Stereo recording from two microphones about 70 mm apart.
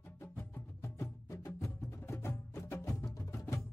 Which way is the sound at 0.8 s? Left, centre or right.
Left.